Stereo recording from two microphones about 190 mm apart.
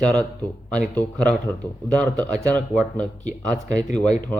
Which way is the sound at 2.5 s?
5° left (ahead or behind).